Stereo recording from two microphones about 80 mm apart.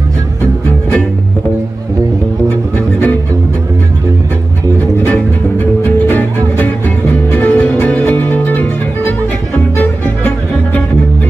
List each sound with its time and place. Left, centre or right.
5.9 s music: left